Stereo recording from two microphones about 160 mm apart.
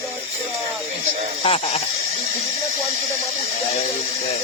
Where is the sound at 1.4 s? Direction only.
35° left (ahead or behind).